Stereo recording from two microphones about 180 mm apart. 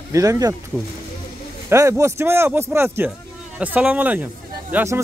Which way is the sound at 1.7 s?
15° right (ahead or behind).